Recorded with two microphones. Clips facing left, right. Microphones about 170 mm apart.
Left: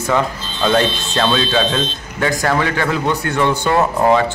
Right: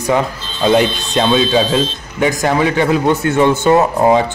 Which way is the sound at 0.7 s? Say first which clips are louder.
Right 3 dB; 15° right (ahead or behind).